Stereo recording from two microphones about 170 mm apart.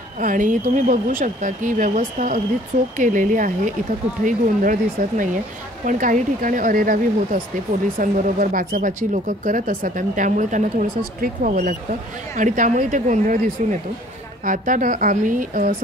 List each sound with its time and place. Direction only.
0.2 s speech: 50° right (ahead or behind)